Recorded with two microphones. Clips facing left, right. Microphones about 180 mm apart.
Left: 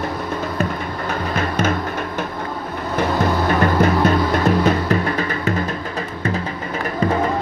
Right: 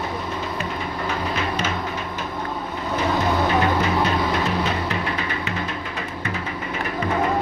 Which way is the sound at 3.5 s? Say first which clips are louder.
Left 4 dB; 50° left (ahead or behind).